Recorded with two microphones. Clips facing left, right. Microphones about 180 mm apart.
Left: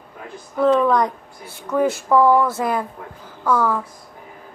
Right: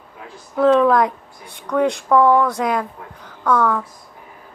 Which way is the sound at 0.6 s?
Centre (ahead or behind).